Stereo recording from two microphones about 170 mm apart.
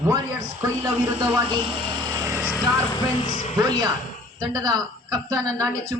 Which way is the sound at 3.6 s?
25° right (ahead or behind).